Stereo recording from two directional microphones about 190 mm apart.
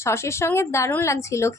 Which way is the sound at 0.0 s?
15° left (ahead or behind).